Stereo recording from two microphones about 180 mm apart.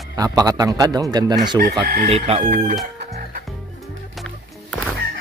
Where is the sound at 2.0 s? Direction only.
35° right (ahead or behind).